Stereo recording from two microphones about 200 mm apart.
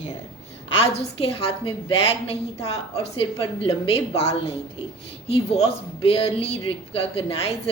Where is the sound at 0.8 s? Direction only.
30° left (ahead or behind).